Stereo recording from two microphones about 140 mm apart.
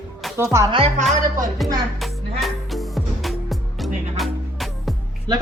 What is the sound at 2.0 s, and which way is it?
Music, centre (ahead or behind).